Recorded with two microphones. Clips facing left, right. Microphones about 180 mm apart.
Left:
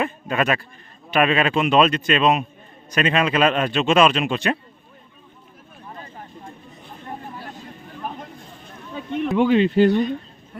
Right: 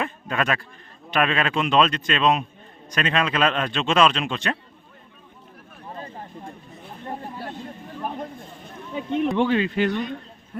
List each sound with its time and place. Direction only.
0.0 s a man's voice: 5° left (ahead or behind)
9.3 s a man's voice: 5° left (ahead or behind)
9.6 s speech: 30° left (ahead or behind)